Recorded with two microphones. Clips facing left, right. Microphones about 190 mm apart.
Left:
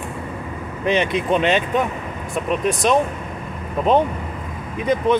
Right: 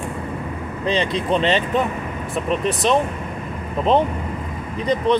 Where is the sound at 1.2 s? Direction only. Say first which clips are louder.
Left 1 dB; 5° left (ahead or behind).